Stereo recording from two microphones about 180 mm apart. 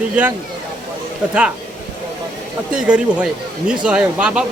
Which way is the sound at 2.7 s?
5° right (ahead or behind).